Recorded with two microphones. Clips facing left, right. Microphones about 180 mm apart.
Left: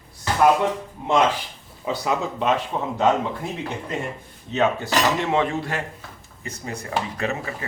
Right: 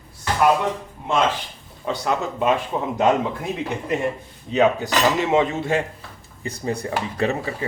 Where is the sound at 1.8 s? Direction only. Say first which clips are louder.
Right 1 dB; centre (ahead or behind).